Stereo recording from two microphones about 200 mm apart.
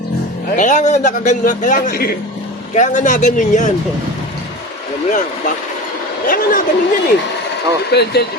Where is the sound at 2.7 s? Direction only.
40° left (ahead or behind).